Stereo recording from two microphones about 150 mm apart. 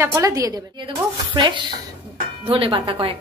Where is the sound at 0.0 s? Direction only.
20° right (ahead or behind).